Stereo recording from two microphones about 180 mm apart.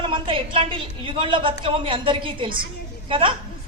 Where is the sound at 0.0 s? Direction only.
30° right (ahead or behind).